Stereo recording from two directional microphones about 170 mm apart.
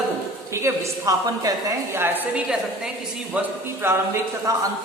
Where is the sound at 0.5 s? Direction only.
15° right (ahead or behind).